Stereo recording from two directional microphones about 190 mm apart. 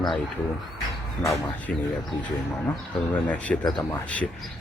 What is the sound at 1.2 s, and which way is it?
Speech, 15° left (ahead or behind).